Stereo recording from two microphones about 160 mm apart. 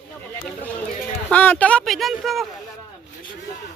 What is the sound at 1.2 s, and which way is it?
Speech, 10° left (ahead or behind).